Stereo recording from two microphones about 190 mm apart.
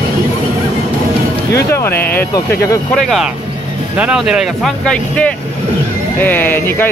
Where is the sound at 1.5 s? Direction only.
15° left (ahead or behind).